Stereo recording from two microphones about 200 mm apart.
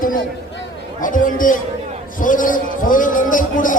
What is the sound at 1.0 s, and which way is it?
A man's voice, 40° left (ahead or behind).